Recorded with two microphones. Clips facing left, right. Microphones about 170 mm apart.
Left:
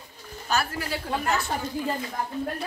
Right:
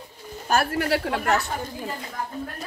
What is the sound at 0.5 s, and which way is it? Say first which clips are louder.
Speech: right 6 dB; 55° right (ahead or behind).